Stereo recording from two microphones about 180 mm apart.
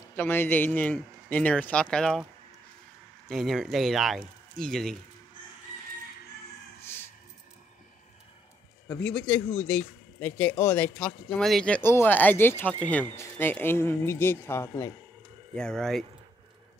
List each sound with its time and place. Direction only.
0.1 s speech: 10° left (ahead or behind)
3.3 s speech: centre (ahead or behind)
6.8 s music: 15° left (ahead or behind)
8.8 s speech: 10° left (ahead or behind)